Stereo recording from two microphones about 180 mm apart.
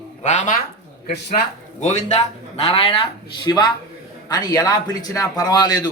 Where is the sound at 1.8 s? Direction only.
40° left (ahead or behind).